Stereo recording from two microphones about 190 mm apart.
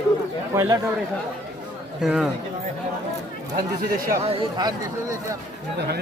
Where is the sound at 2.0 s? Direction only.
5° right (ahead or behind).